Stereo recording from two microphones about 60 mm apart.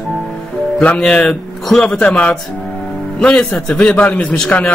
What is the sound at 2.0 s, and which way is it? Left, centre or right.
A man's voice, left.